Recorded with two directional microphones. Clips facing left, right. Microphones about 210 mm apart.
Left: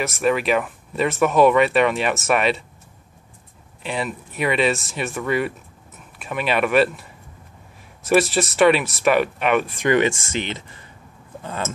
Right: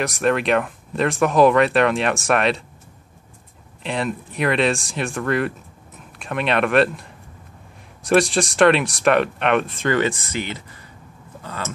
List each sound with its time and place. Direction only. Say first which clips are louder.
0.0 s speech: even; 5° left (ahead or behind)
3.8 s speech: right 2 dB; 5° left (ahead or behind)
9.8 s speech: left 4 dB; 20° left (ahead or behind)